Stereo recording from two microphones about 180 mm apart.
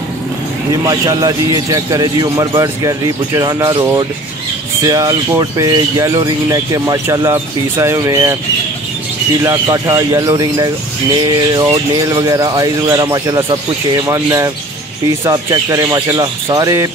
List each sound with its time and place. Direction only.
0.8 s speech: 20° right (ahead or behind)
9.4 s speech: 15° right (ahead or behind)